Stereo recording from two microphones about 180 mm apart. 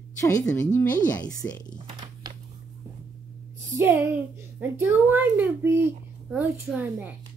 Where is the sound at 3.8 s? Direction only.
15° right (ahead or behind).